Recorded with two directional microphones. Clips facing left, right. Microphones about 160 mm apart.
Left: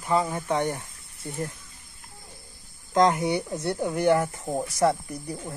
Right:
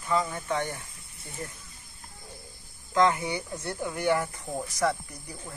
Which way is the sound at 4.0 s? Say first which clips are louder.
Left 4 dB; 25° left (ahead or behind).